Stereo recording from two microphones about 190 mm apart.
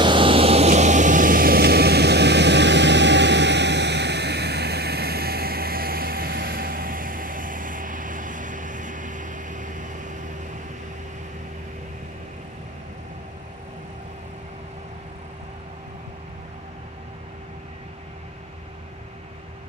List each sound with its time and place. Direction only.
0.0 s vehicle: 25° right (ahead or behind)